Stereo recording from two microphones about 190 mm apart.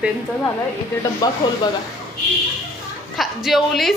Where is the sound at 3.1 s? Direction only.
Centre (ahead or behind).